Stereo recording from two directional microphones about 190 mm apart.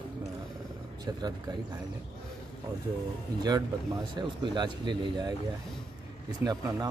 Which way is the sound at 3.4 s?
20° right (ahead or behind).